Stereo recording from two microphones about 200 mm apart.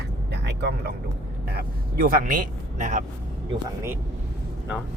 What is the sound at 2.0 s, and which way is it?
A man's voice, 45° right (ahead or behind).